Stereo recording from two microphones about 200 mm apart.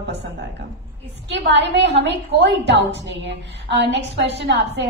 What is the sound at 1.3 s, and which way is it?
A woman's voice, 60° right (ahead or behind).